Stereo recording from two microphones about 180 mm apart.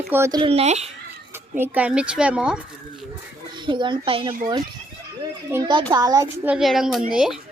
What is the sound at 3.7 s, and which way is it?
Speech, 25° right (ahead or behind).